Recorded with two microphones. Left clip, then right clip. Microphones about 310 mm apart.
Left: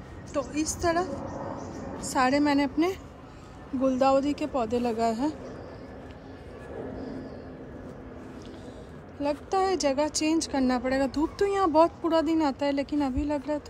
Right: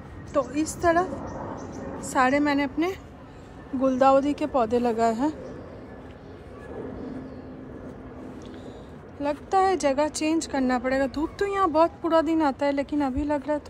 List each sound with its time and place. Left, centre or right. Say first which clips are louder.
0.3 s speech: right 4 dB; centre
9.2 s speech: right 4 dB; centre